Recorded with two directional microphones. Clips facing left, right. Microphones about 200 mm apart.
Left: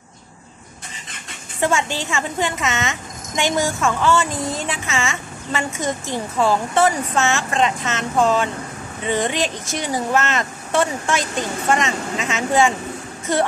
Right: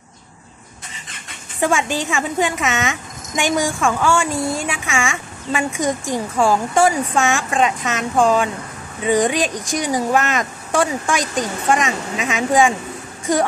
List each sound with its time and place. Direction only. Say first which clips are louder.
1.6 s a woman's voice: right 2 dB; 15° right (ahead or behind)